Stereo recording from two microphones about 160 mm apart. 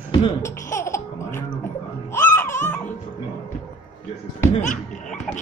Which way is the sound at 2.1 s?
15° left (ahead or behind).